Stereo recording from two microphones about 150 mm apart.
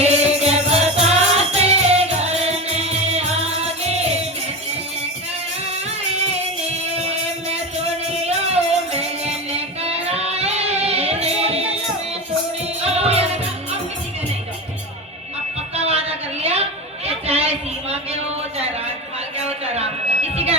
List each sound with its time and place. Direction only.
0.0 s music: 45° right (ahead or behind)
8.2 s music: 45° right (ahead or behind)
12.8 s music: 45° right (ahead or behind)
15.7 s a sound: 45° right (ahead or behind)